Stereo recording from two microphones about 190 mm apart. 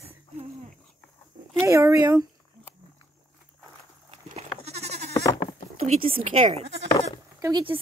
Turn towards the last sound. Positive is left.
turn(degrees=-20)  # may be behind; listen again after turning